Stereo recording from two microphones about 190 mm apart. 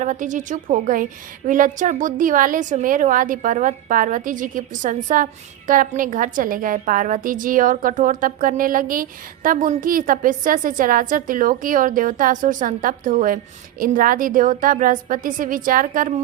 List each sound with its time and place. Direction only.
0.0 s a woman's voice: 40° right (ahead or behind)